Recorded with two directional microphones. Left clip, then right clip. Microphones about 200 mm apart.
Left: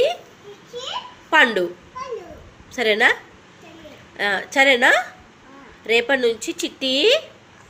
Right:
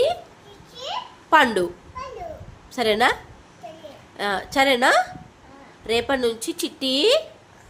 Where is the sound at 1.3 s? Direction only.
25° right (ahead or behind).